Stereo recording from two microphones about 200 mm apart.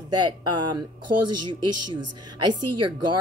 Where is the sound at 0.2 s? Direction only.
20° right (ahead or behind).